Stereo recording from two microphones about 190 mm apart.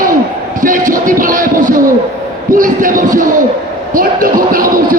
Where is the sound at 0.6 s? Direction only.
45° right (ahead or behind).